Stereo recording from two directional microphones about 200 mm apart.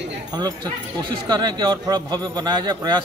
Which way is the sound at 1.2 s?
20° right (ahead or behind).